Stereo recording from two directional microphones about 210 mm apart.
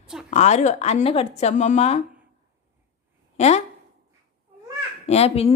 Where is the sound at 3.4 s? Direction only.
30° left (ahead or behind).